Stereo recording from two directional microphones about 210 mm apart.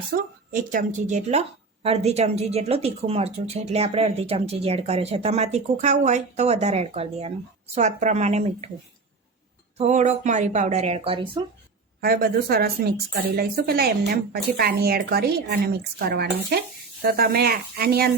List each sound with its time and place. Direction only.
0.1 s a woman's voice: 40° right (ahead or behind)
9.7 s speech: 35° right (ahead or behind)
11.9 s a woman's voice: 45° right (ahead or behind)